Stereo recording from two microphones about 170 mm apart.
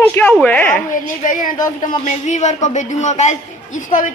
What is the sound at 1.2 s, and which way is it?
A man's voice, 50° left (ahead or behind).